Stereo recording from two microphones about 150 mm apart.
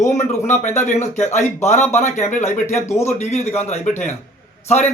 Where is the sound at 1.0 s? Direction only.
50° left (ahead or behind).